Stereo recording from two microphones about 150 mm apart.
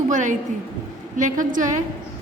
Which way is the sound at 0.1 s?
55° right (ahead or behind).